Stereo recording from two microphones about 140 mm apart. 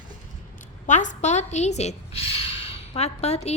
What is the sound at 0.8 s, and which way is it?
A woman's voice, 60° left (ahead or behind).